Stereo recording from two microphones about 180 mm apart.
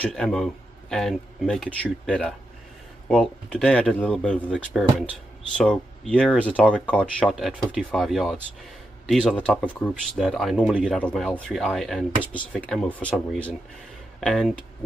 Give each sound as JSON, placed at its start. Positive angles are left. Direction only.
{"t": 0.0, "sound": "a man's voice", "side_deg": 5}